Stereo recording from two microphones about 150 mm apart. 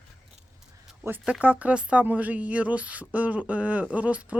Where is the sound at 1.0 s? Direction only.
5° right (ahead or behind).